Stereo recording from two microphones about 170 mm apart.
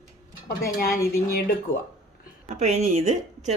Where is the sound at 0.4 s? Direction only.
60° left (ahead or behind).